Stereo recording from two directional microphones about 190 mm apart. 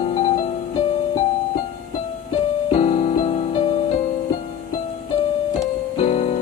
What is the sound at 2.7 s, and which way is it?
Music, 35° left (ahead or behind).